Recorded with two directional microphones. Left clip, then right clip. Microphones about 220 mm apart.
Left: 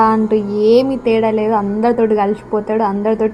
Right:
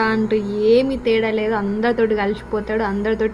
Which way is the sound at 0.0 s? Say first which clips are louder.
Left 6 dB; 30° right (ahead or behind).